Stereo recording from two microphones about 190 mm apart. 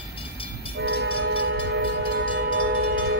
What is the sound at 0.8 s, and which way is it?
Train, 80° right.